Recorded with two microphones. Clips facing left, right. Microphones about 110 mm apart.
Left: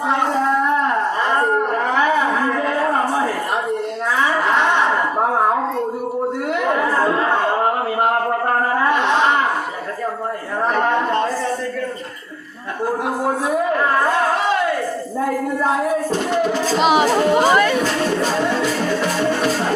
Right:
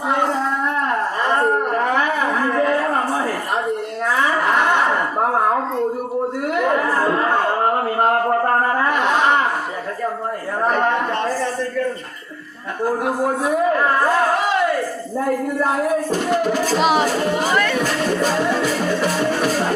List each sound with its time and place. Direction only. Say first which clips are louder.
16.5 s music: left 2 dB; centre (ahead or behind)
17.4 s music: left 4 dB; 20° left (ahead or behind)